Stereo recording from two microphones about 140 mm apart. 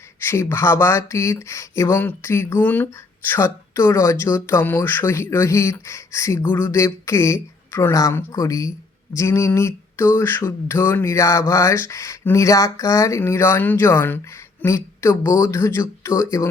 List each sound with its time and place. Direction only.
0.2 s speech: 20° left (ahead or behind)